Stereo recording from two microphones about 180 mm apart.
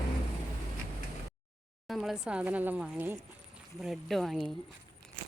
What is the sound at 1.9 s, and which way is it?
Speech, centre (ahead or behind).